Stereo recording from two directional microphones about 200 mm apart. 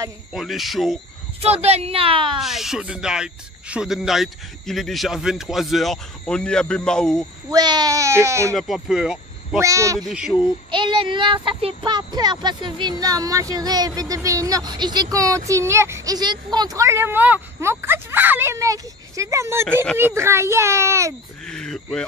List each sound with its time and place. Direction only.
0.3 s speech: centre (ahead or behind)
1.4 s a child's voice: 30° right (ahead or behind)
2.4 s speech: centre (ahead or behind)
7.5 s speech: 20° right (ahead or behind)
8.5 s speech: centre (ahead or behind)
9.6 s speech: 15° right (ahead or behind)
9.9 s speech: centre (ahead or behind)
10.7 s a child's voice: 25° right (ahead or behind)
19.6 s speech: 5° left (ahead or behind)
20.0 s speech: 10° right (ahead or behind)
21.5 s speech: 5° left (ahead or behind)